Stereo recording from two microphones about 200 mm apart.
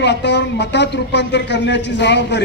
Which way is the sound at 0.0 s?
60° left (ahead or behind).